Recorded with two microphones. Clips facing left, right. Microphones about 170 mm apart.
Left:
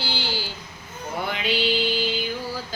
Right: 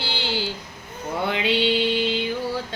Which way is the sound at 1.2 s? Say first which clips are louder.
Right 3 dB; 25° right (ahead or behind).